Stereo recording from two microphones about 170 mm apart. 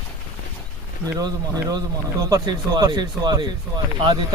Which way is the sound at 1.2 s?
20° right (ahead or behind).